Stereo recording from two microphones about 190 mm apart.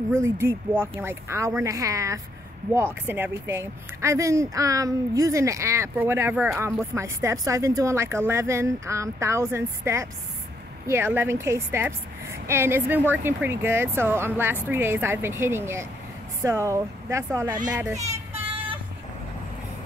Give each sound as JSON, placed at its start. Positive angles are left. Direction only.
{"t": 0.1, "sound": "speech", "side_deg": -15}
{"t": 17.7, "sound": "child singing", "side_deg": -15}